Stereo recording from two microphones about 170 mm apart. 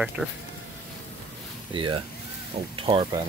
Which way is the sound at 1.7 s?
30° right (ahead or behind).